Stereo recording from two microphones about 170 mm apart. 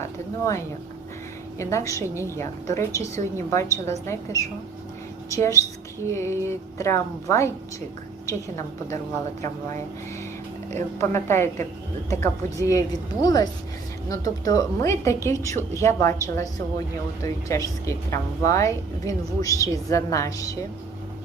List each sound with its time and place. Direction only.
0.0 s a woman's voice: 20° left (ahead or behind)
11.1 s a woman's voice: 15° left (ahead or behind)